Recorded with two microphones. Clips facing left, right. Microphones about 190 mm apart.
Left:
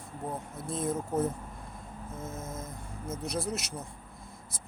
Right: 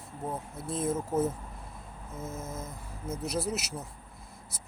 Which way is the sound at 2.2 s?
60° right (ahead or behind).